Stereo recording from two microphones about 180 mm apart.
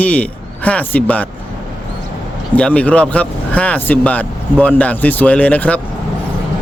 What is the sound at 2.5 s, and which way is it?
Speech, 5° left (ahead or behind).